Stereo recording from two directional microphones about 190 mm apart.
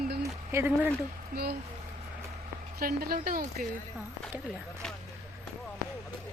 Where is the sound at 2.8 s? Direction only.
50° right (ahead or behind).